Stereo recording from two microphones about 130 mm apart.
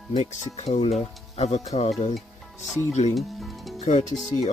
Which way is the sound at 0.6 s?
55° left (ahead or behind).